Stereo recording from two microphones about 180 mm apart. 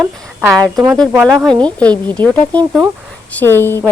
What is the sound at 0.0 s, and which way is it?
A woman's voice, centre (ahead or behind).